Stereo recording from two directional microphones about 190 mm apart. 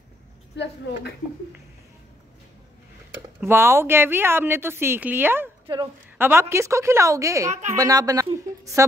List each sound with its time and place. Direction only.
3.3 s a woman's voice: 15° right (ahead or behind)